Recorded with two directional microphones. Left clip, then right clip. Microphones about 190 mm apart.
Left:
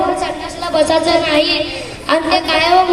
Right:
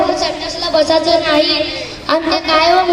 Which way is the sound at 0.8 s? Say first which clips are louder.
Even; 40° left (ahead or behind).